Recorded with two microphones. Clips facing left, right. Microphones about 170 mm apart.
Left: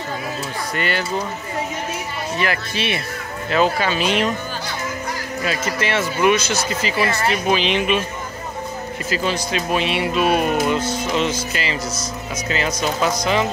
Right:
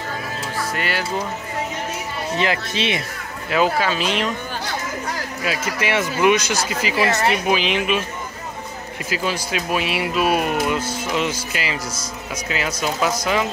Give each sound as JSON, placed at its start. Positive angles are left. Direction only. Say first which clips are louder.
{"t": 0.7, "sound": "speech", "louder": "left 4 dB", "side_deg": -5}
{"t": 2.3, "sound": "speech", "louder": "right 1 dB", "side_deg": -20}
{"t": 3.4, "sound": "speech", "louder": "even", "side_deg": -10}
{"t": 5.4, "sound": "speech", "louder": "left 2 dB", "side_deg": -10}
{"t": 7.4, "sound": "speech", "louder": "left 1 dB", "side_deg": -5}
{"t": 9.1, "sound": "speech", "louder": "left 1 dB", "side_deg": -10}